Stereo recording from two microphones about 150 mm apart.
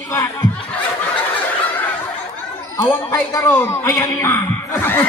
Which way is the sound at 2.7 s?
15° left (ahead or behind).